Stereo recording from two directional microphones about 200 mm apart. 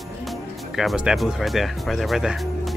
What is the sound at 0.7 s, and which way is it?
Speech, centre (ahead or behind).